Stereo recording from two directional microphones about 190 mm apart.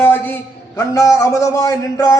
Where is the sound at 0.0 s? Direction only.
10° left (ahead or behind).